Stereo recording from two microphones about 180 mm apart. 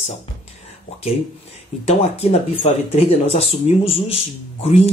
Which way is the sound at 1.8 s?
35° left (ahead or behind).